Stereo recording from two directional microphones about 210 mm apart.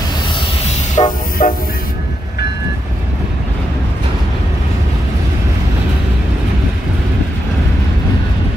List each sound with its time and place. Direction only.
1.0 s train: 20° left (ahead or behind)
1.4 s train: 40° left (ahead or behind)